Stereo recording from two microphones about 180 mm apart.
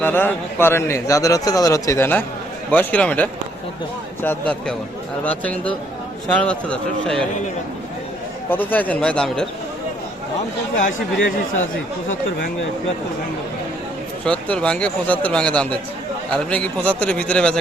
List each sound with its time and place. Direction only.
0.0 s a man's voice: 10° left (ahead or behind)
8.4 s a man's voice: 10° left (ahead or behind)
14.3 s a man's voice: 5° left (ahead or behind)